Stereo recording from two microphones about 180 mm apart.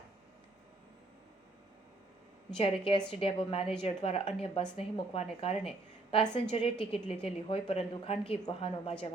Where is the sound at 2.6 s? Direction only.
30° left (ahead or behind).